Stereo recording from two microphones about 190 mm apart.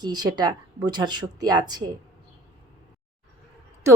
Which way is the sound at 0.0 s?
20° right (ahead or behind).